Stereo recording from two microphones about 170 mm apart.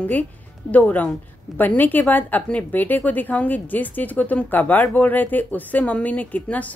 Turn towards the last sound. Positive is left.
turn(degrees=10)  # may be behind; listen again after turning